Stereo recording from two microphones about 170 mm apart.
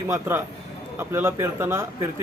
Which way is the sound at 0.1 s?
15° right (ahead or behind).